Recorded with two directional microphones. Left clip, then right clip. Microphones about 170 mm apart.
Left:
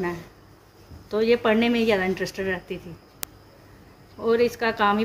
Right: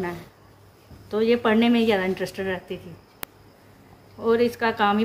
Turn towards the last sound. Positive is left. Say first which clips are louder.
# even
turn(degrees=0)  # may be behind; listen again after turning